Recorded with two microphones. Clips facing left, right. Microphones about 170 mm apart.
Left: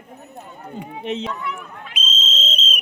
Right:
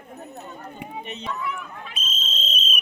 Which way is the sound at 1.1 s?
90° left.